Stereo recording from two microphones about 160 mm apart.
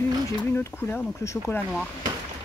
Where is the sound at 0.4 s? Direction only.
10° left (ahead or behind).